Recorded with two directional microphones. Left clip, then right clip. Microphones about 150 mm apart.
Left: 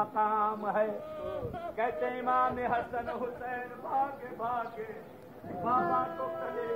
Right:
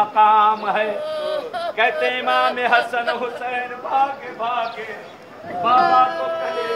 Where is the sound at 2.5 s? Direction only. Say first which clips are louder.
Right 14 dB; 10° right (ahead or behind).